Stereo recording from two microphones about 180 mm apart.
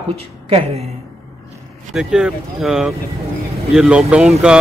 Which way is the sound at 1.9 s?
5° right (ahead or behind).